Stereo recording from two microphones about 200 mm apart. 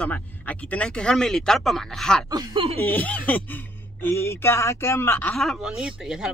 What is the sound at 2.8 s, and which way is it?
Speech, 10° left (ahead or behind).